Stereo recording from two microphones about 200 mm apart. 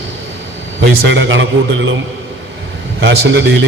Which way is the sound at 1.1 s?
65° right (ahead or behind).